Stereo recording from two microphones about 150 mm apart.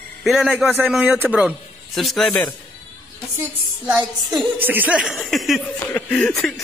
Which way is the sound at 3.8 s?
Centre (ahead or behind).